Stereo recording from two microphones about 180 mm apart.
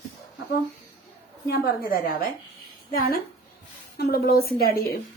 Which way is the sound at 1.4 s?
60° left (ahead or behind).